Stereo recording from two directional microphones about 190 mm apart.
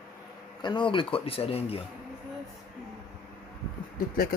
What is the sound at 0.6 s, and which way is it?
Speech, 25° left (ahead or behind).